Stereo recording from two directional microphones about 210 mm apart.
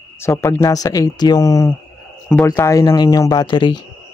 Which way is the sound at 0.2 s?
15° left (ahead or behind).